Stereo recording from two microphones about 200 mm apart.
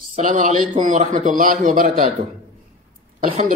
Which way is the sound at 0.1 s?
40° right (ahead or behind).